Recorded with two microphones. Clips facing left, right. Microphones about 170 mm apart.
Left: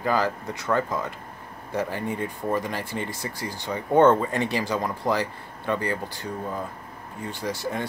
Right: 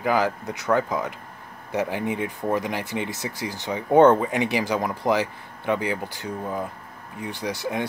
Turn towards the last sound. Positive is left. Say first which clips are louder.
# right 2 dB
turn(degrees=-15)  # may be behind; listen again after turning